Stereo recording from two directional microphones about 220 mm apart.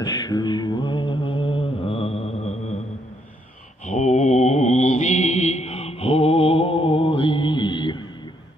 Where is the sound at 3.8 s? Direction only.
30° left (ahead or behind).